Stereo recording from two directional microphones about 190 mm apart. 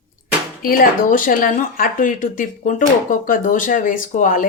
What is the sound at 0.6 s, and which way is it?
Speech, 45° left (ahead or behind).